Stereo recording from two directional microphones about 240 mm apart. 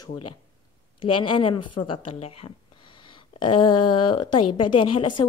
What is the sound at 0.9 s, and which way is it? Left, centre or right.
Speech, left.